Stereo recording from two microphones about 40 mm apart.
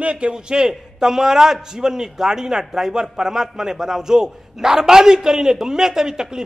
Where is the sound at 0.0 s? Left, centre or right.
Right.